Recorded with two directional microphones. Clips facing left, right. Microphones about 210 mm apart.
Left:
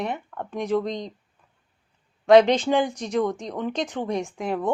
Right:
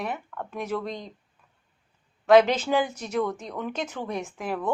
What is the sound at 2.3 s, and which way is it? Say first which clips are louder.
Speech: left 3 dB; 5° right (ahead or behind).